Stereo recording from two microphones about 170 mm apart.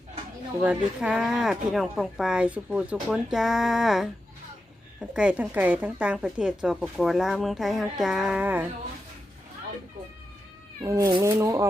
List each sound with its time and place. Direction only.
0.6 s a woman's voice: 5° right (ahead or behind)
10.8 s speech: 20° right (ahead or behind)